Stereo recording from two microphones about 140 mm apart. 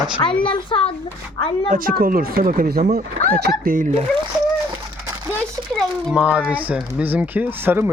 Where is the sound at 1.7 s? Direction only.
90° right.